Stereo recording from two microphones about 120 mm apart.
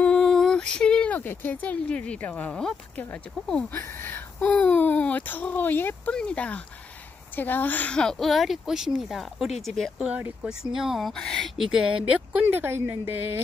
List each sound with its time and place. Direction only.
0.0 s a woman's voice: 5° left (ahead or behind)
9.9 s a woman's voice: 5° right (ahead or behind)
12.1 s speech: 15° right (ahead or behind)